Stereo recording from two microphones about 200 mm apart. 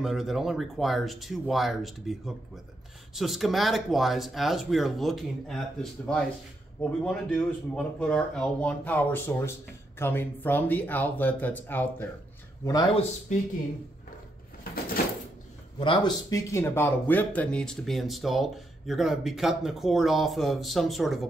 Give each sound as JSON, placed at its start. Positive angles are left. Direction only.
{"t": 0.0, "sound": "speech", "side_deg": 0}
{"t": 12.6, "sound": "a man's voice", "side_deg": 20}
{"t": 15.8, "sound": "speech", "side_deg": 25}